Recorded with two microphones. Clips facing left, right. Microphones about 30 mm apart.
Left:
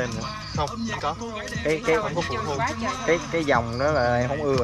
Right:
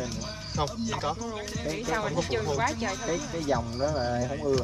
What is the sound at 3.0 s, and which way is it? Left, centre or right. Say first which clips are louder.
Speech: left 9 dB; left.